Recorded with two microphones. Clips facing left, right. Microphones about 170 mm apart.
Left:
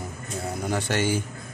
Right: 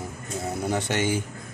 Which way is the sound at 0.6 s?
20° right (ahead or behind).